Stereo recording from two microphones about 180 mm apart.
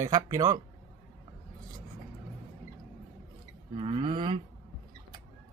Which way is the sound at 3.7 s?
35° right (ahead or behind).